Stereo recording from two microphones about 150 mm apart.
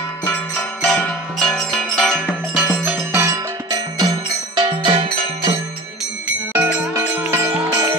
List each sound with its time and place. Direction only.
0.3 s music: 5° left (ahead or behind)
2.8 s music: 15° right (ahead or behind); by 5.6 s 35° right (ahead or behind)
6.2 s music: 10° right (ahead or behind)